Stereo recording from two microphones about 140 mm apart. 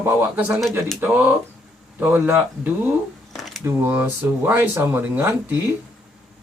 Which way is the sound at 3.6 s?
15° right (ahead or behind).